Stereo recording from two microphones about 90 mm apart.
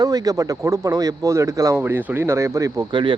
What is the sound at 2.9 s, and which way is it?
Speech, 65° right (ahead or behind).